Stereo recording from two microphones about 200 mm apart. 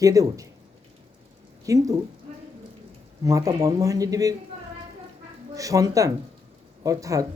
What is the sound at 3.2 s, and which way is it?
A woman's voice, 15° right (ahead or behind).